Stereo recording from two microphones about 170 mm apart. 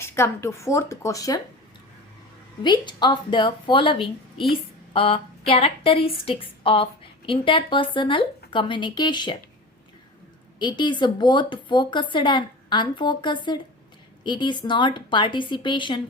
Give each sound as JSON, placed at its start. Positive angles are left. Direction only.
{"t": 0.0, "sound": "speech", "side_deg": 15}
{"t": 2.6, "sound": "a woman's voice", "side_deg": 25}
{"t": 10.6, "sound": "a woman's voice", "side_deg": 25}